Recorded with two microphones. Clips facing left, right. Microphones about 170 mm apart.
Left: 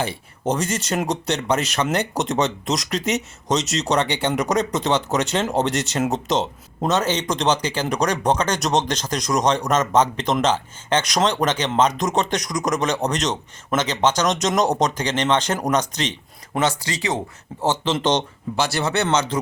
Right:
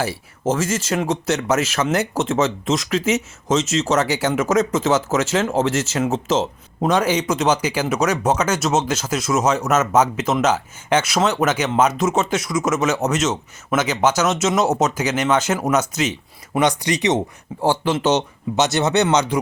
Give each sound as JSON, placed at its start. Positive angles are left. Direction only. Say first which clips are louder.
{"t": 0.0, "sound": "speech", "louder": "right 2 dB", "side_deg": -5}
{"t": 16.6, "sound": "speech", "louder": "right 4 dB", "side_deg": -20}
{"t": 17.8, "sound": "speech", "louder": "right 1 dB", "side_deg": -10}
{"t": 18.5, "sound": "speech", "louder": "right 4 dB", "side_deg": -20}